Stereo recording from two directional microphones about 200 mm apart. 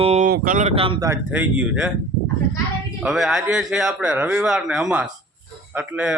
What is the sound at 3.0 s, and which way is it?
Speech, 5° right (ahead or behind).